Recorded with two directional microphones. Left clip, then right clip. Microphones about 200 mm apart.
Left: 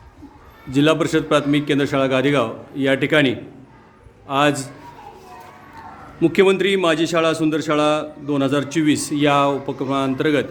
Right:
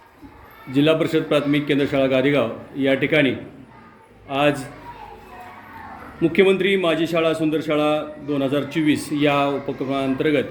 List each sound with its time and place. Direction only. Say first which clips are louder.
0.7 s a man's voice: left 1 dB; 15° left (ahead or behind)
6.1 s a man's voice: left 1 dB; 20° left (ahead or behind)